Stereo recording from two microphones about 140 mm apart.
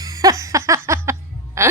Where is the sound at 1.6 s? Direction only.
20° right (ahead or behind).